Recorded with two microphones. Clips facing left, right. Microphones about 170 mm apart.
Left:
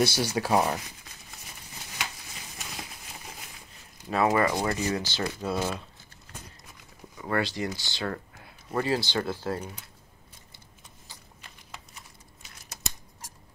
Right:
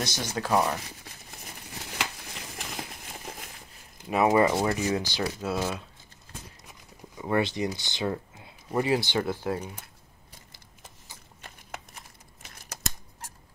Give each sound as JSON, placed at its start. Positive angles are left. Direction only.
{"t": 0.0, "sound": "speech", "side_deg": 10}
{"t": 2.0, "sound": "a sound", "side_deg": -65}
{"t": 4.1, "sound": "speech", "side_deg": -20}
{"t": 7.2, "sound": "speech", "side_deg": -20}